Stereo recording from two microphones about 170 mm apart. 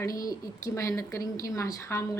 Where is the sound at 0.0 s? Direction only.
20° left (ahead or behind).